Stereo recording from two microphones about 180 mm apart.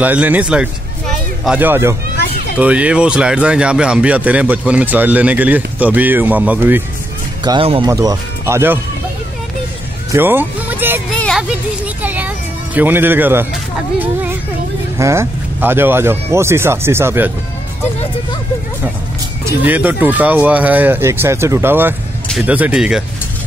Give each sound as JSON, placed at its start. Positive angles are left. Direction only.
{"t": 0.0, "sound": "speech", "side_deg": -10}
{"t": 7.4, "sound": "speech", "side_deg": -30}
{"t": 10.1, "sound": "speech", "side_deg": -10}
{"t": 11.1, "sound": "music", "side_deg": 5}
{"t": 11.4, "sound": "music", "side_deg": -10}
{"t": 15.0, "sound": "speech", "side_deg": -15}
{"t": 19.4, "sound": "speech", "side_deg": -10}